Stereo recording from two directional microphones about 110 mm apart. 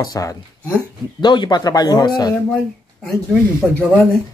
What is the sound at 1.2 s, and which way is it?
Speech, 45° left (ahead or behind).